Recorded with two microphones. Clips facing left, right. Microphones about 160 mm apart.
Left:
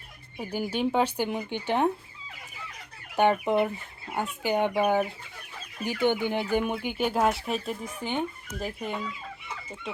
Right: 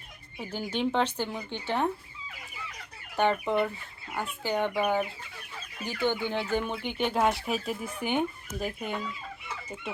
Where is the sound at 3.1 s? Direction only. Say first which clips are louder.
Left 3 dB; 15° left (ahead or behind).